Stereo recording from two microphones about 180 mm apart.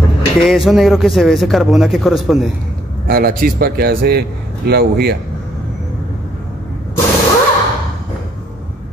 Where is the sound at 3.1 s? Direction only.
55° right (ahead or behind).